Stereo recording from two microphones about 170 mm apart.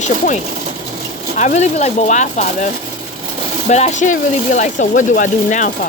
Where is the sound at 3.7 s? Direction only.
40° left (ahead or behind).